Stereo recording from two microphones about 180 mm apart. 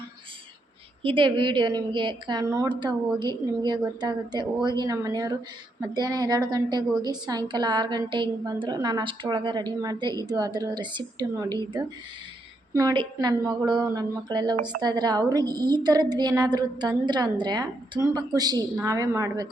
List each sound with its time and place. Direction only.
1.0 s a woman's voice: 30° right (ahead or behind)